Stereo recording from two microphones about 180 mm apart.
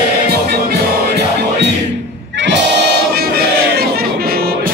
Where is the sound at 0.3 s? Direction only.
60° right (ahead or behind).